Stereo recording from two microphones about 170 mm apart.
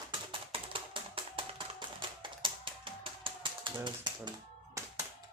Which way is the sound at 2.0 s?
30° right (ahead or behind).